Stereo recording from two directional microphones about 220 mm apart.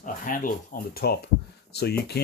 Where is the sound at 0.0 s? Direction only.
40° left (ahead or behind).